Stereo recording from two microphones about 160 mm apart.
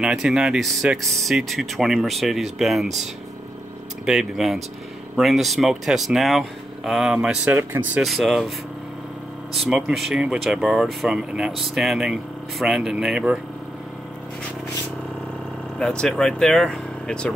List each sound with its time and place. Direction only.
0.0 s speech: 5° right (ahead or behind)
4.0 s speech: 5° right (ahead or behind)
8.0 s speech: centre (ahead or behind)
9.5 s speech: centre (ahead or behind)
15.8 s speech: 5° left (ahead or behind)